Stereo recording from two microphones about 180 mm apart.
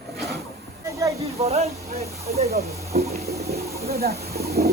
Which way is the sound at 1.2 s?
35° right (ahead or behind).